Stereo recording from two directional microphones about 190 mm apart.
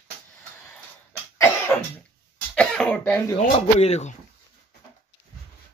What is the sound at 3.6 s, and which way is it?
Speech, 35° left (ahead or behind).